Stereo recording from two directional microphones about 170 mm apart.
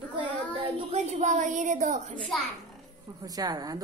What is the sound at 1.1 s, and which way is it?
Speech, 45° right (ahead or behind).